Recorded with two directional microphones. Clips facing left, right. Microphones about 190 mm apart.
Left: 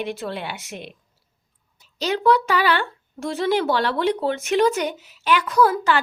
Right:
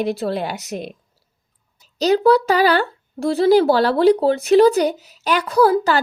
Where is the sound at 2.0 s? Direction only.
40° right (ahead or behind).